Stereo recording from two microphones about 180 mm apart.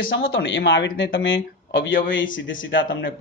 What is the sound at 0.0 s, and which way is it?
Speech, 90° left.